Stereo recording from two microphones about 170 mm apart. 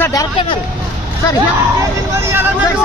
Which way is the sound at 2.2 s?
15° right (ahead or behind).